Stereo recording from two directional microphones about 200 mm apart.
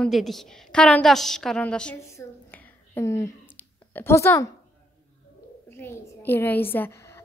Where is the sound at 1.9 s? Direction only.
15° left (ahead or behind).